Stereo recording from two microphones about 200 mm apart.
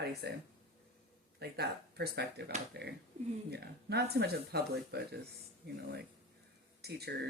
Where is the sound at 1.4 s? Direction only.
55° right (ahead or behind).